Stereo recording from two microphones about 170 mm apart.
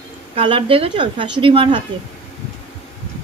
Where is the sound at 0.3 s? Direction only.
30° right (ahead or behind).